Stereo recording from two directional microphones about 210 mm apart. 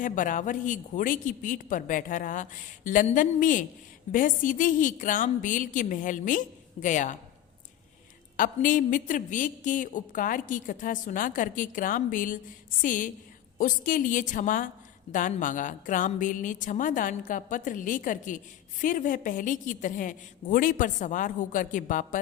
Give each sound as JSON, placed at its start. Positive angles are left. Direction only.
{"t": 0.0, "sound": "a woman's voice", "side_deg": 40}
{"t": 8.4, "sound": "a woman's voice", "side_deg": 40}